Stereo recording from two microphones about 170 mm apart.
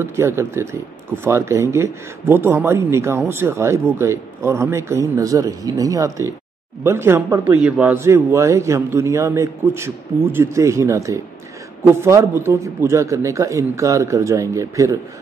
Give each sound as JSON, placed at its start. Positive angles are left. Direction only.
{"t": 0.0, "sound": "speech", "side_deg": -15}